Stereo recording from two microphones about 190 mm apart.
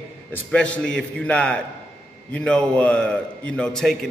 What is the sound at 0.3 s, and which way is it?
A man's voice, 5° left (ahead or behind).